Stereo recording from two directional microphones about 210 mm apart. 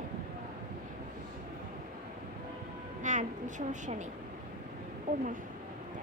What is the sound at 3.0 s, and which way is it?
A woman's voice, 35° right (ahead or behind).